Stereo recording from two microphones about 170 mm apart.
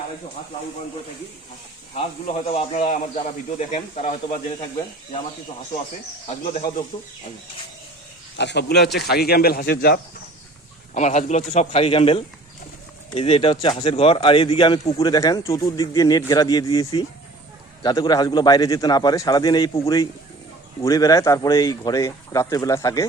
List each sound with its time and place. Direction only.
2.6 s a man's voice: 35° left (ahead or behind)
6.2 s a man's voice: 35° left (ahead or behind)
8.4 s speech: 85° left; by 10.0 s 65° left (ahead or behind)
10.9 s a man's voice: 45° left (ahead or behind)
15.1 s speech: 20° left (ahead or behind)
20.8 s speech: 20° left (ahead or behind)